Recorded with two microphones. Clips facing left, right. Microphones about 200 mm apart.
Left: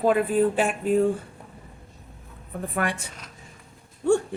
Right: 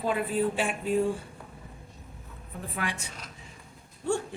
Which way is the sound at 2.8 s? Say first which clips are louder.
Left 5 dB; 50° left (ahead or behind).